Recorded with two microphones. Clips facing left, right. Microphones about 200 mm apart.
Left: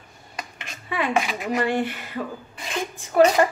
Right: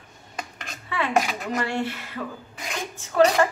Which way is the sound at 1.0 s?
15° left (ahead or behind).